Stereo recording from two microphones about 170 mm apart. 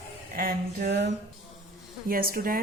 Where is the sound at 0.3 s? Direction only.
60° right (ahead or behind); by 1.1 s 80° right.